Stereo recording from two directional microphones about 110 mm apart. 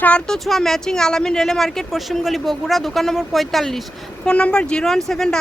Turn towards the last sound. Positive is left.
turn(degrees=5)  # may be behind; listen again after turning